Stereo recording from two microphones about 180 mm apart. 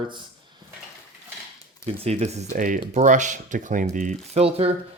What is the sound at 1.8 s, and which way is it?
Speech, 35° right (ahead or behind).